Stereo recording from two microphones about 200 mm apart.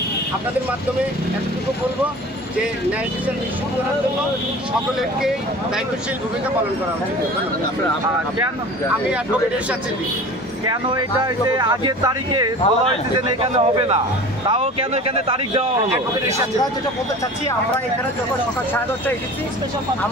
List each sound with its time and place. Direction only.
10.6 s a man's voice: 20° right (ahead or behind)
15.9 s speech: 15° right (ahead or behind)